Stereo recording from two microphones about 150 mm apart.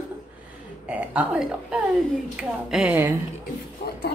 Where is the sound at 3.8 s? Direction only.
75° left (ahead or behind).